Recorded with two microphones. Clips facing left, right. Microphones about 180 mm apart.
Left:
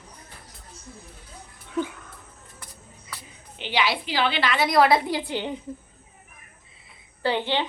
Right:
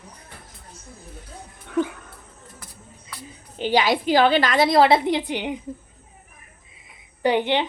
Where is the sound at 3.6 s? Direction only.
45° right (ahead or behind).